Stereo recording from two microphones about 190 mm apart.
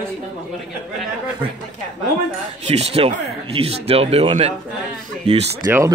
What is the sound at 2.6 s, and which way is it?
Speech, 30° right (ahead or behind).